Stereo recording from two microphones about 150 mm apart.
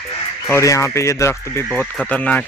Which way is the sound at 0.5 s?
20° left (ahead or behind).